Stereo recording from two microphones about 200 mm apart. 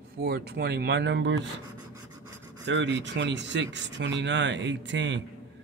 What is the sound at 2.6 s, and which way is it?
Speech, 65° right (ahead or behind).